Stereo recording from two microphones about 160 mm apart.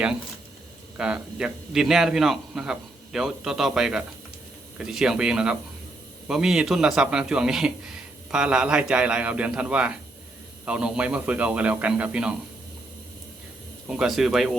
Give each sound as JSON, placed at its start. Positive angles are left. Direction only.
{"t": 0.9, "sound": "a man's voice", "side_deg": -5}
{"t": 13.8, "sound": "a man's voice", "side_deg": -5}